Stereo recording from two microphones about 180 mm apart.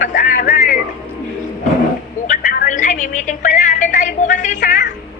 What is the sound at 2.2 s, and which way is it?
Music, 50° left (ahead or behind).